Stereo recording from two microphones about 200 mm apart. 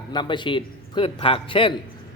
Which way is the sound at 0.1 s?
25° left (ahead or behind).